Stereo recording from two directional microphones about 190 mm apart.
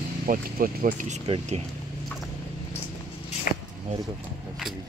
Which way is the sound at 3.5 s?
45° left (ahead or behind).